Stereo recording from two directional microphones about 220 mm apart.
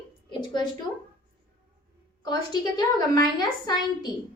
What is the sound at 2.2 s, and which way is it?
Speech, 20° left (ahead or behind).